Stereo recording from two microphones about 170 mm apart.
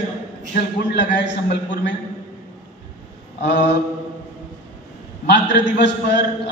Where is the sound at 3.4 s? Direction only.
90° left.